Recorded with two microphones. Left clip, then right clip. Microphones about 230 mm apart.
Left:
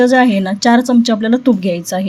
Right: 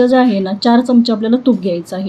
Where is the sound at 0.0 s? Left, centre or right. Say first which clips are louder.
Left 1 dB; left.